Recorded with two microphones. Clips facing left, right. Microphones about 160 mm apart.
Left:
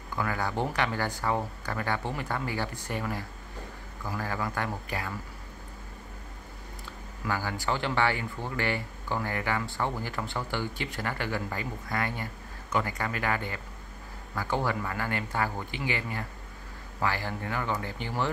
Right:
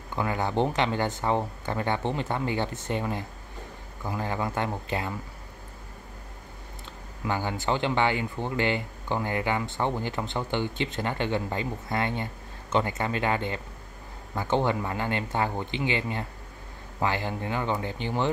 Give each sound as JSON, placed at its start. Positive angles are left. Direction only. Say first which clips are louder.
{"t": 0.1, "sound": "speech", "louder": "right 3 dB", "side_deg": -20}
{"t": 7.2, "sound": "speech", "louder": "right 3 dB", "side_deg": -20}